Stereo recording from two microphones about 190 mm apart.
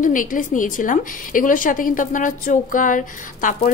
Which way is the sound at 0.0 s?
45° left (ahead or behind).